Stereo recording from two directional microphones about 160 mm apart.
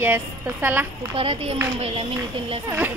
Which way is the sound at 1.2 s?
35° right (ahead or behind).